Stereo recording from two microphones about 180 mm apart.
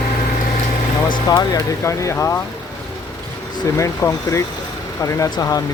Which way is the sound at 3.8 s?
15° left (ahead or behind).